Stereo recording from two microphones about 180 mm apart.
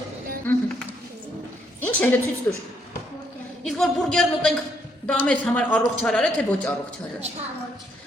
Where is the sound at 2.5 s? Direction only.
10° left (ahead or behind).